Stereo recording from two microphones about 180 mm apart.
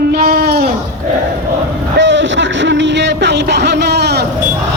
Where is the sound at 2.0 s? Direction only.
85° right; by 4.3 s 65° right (ahead or behind).